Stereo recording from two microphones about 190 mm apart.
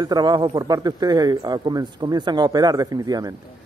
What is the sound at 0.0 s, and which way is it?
A man's voice, 20° right (ahead or behind).